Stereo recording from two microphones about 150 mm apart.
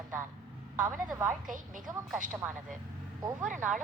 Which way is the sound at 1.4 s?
60° right (ahead or behind).